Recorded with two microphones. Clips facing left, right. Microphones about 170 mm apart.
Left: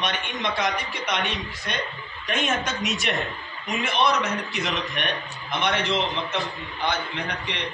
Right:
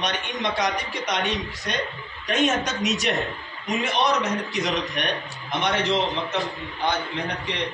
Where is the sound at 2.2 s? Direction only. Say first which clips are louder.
Right 4 dB; 40° right (ahead or behind).